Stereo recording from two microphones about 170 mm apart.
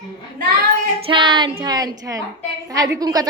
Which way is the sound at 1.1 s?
30° right (ahead or behind).